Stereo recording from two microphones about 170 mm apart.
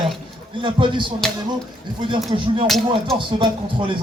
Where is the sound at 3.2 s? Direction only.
30° right (ahead or behind).